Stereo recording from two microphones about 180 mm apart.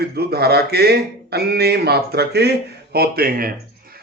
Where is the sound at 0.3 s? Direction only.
60° right (ahead or behind).